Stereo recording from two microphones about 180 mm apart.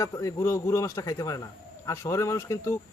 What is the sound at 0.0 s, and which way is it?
A man's voice, 20° left (ahead or behind).